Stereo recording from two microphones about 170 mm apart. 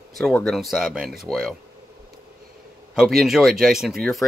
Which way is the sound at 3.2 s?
Centre (ahead or behind).